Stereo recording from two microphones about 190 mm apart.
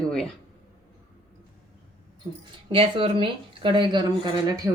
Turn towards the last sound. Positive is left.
turn(degrees=-25)  # may be behind; listen again after turning